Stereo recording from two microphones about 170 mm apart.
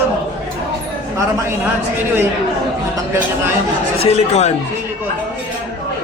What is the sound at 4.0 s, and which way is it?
Speech, 40° left (ahead or behind).